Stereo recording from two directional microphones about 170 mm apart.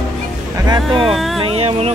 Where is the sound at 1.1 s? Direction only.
Centre (ahead or behind).